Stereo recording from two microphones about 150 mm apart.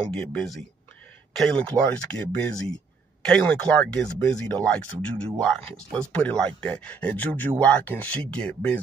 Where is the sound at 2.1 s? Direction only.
30° right (ahead or behind).